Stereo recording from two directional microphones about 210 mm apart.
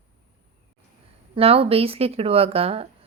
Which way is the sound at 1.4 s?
25° right (ahead or behind).